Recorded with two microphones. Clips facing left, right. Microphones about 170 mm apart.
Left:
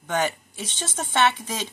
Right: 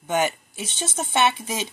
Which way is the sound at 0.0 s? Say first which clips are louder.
Right 2 dB; 10° right (ahead or behind).